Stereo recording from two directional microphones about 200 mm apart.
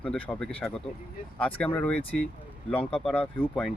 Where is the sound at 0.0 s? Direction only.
5° left (ahead or behind).